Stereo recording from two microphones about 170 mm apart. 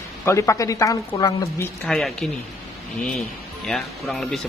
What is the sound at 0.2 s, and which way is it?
A woman's voice, 15° left (ahead or behind).